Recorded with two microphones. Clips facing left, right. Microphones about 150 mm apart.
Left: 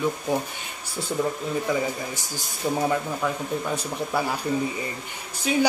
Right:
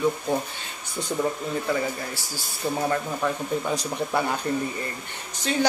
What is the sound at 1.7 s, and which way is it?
Speech, 15° left (ahead or behind).